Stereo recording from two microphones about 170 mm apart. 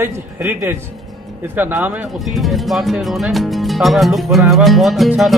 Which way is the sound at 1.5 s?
10° right (ahead or behind).